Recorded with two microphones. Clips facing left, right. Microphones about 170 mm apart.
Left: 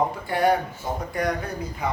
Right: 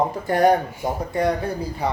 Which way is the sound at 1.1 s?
25° right (ahead or behind).